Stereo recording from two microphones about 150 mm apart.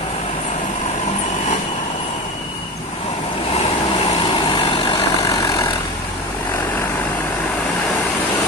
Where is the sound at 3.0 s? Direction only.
45° left (ahead or behind).